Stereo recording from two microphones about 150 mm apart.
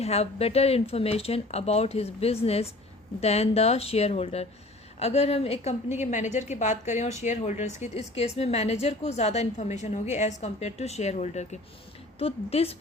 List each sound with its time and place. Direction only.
0.0 s a woman's voice: 45° left (ahead or behind)